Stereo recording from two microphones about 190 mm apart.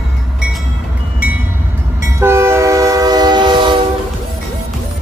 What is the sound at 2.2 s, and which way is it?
Train, 15° right (ahead or behind).